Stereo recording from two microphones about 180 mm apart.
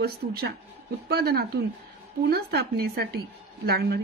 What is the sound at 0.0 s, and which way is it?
A woman's voice, 60° right (ahead or behind).